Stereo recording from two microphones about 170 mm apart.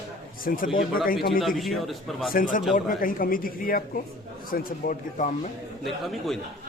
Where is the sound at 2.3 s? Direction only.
50° left (ahead or behind).